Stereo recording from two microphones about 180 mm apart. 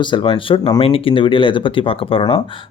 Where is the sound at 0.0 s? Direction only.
25° left (ahead or behind).